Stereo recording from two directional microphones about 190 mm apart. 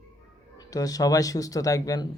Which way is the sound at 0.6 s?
20° left (ahead or behind).